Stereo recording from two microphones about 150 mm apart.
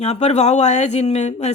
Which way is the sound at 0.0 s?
45° left (ahead or behind).